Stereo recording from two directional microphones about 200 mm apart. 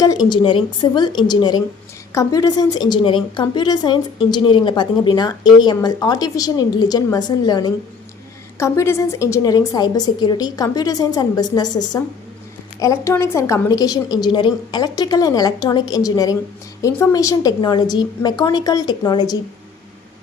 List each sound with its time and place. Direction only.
0.3 s a woman's voice: 25° left (ahead or behind)